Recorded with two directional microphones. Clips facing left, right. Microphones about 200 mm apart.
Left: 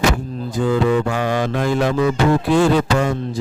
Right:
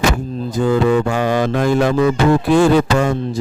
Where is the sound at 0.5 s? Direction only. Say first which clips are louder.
Right 2 dB; 45° right (ahead or behind).